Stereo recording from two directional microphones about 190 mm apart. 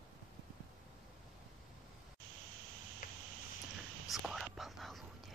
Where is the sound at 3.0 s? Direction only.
45° left (ahead or behind).